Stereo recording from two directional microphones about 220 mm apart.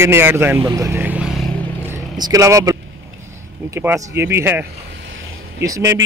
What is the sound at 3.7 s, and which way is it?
Speech, 10° right (ahead or behind).